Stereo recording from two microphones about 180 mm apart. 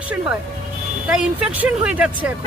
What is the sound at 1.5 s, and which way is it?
Speech, 10° right (ahead or behind).